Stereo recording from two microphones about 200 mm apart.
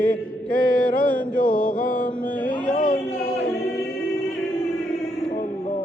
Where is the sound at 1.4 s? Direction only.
45° left (ahead or behind).